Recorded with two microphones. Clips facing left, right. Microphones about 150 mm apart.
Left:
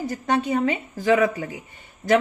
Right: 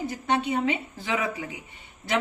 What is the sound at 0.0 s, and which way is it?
A woman's voice, 40° left (ahead or behind).